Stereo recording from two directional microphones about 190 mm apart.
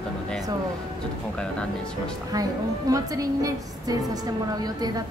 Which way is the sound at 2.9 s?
20° right (ahead or behind).